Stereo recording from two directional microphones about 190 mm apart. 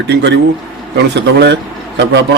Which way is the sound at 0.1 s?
65° right (ahead or behind).